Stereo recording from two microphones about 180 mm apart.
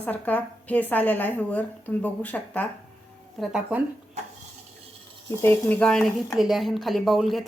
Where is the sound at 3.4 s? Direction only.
5° right (ahead or behind).